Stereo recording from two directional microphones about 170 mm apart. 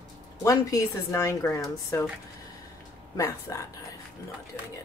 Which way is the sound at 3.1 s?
20° left (ahead or behind).